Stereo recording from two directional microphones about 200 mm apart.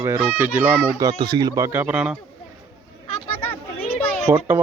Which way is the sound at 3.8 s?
30° left (ahead or behind).